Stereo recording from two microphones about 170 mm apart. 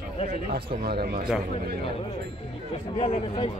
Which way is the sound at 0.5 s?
65° right (ahead or behind).